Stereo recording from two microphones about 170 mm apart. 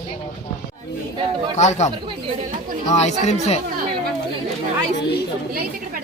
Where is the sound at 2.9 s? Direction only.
40° left (ahead or behind).